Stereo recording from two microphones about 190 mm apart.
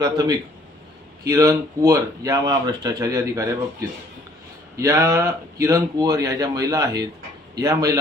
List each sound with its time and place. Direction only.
0.0 s a man's voice: 20° right (ahead or behind)
4.8 s speech: 15° right (ahead or behind)